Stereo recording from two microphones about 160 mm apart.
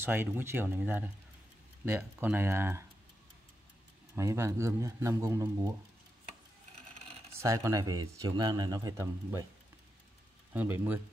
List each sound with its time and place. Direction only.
0.0 s speech: 15° right (ahead or behind)
4.1 s speech: 20° right (ahead or behind)
7.4 s speech: 20° right (ahead or behind)
10.5 s speech: 10° right (ahead or behind)